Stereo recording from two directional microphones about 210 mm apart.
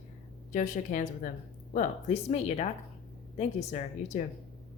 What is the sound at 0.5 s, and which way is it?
A woman's voice, 40° left (ahead or behind).